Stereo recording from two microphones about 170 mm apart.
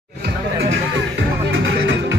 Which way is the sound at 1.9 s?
90° right.